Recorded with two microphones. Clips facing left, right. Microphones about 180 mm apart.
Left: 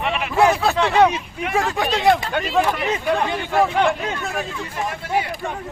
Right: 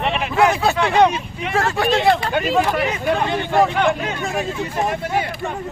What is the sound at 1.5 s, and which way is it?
Speech, 15° left (ahead or behind).